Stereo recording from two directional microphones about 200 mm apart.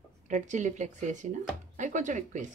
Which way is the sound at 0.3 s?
35° right (ahead or behind).